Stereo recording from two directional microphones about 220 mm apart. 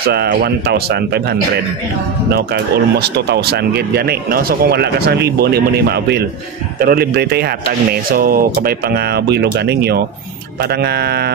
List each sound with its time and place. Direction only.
0.0 s speech: 45° right (ahead or behind)